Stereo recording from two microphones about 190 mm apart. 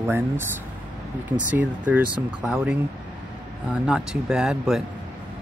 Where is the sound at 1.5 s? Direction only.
5° right (ahead or behind).